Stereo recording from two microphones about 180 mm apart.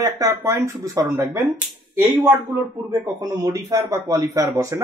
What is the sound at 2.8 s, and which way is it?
Speech, 20° right (ahead or behind).